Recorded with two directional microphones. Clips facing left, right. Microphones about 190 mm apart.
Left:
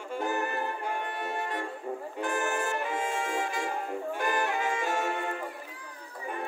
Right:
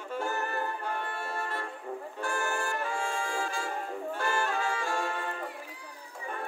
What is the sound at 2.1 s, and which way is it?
Brass instrument, 20° left (ahead or behind).